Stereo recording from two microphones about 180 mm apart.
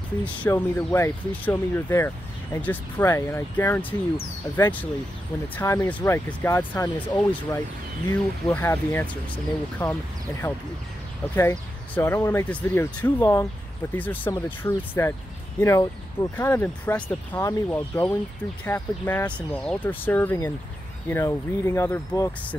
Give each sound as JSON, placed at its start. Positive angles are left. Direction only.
{"t": 0.2, "sound": "speech", "side_deg": 10}
{"t": 11.3, "sound": "speech", "side_deg": 15}